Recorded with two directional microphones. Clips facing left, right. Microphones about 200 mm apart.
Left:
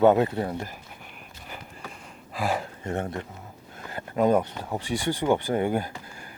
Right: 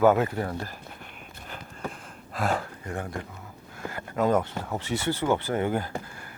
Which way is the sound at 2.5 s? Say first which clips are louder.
Left 3 dB; 20° left (ahead or behind).